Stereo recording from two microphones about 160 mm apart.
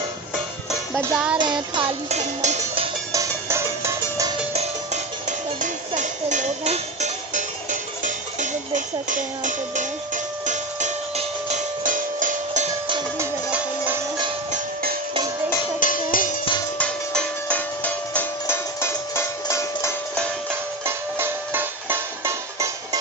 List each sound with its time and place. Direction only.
0.7 s music: 5° right (ahead or behind)
2.0 s cowbell: 45° right (ahead or behind)
3.1 s music: 20° right (ahead or behind)
5.5 s music: 50° right (ahead or behind)
13.1 s music: 10° right (ahead or behind)
15.8 s music: 55° left (ahead or behind)
16.7 s music: 5° left (ahead or behind)
20.8 s music: 15° right (ahead or behind)